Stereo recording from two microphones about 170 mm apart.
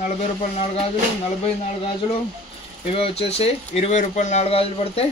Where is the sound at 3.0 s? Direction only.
35° left (ahead or behind).